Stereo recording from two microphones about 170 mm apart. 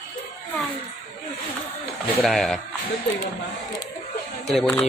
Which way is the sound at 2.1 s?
Centre (ahead or behind).